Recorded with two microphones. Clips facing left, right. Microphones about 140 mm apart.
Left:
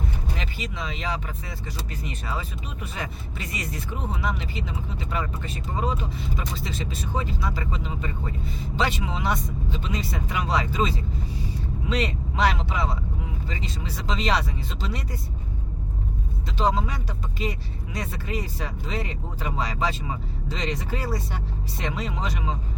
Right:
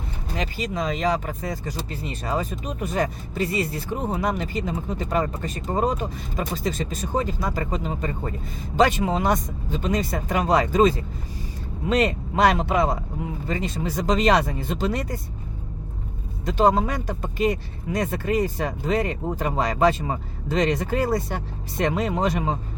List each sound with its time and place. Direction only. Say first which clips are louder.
0.3 s speech: right 6 dB; 40° right (ahead or behind)
1.9 s speech: right 5 dB; 30° right (ahead or behind); by 15.2 s 50° right (ahead or behind)
16.5 s speech: right 6 dB; 50° right (ahead or behind)